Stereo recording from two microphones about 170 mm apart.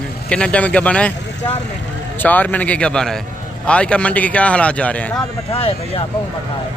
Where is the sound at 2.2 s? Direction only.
10° left (ahead or behind).